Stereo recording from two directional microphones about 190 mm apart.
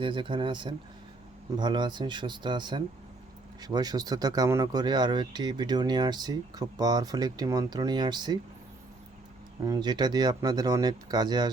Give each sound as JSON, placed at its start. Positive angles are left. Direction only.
{"t": 0.0, "sound": "speech", "side_deg": -25}
{"t": 9.6, "sound": "speech", "side_deg": -20}